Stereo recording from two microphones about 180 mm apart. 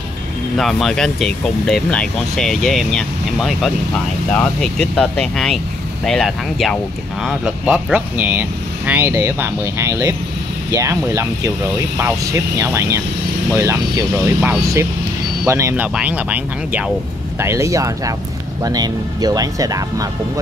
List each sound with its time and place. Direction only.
0.6 s speech: centre (ahead or behind); by 20.1 s 20° right (ahead or behind)